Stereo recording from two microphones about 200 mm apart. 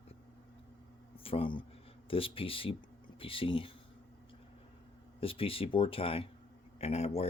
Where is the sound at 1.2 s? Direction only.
25° left (ahead or behind).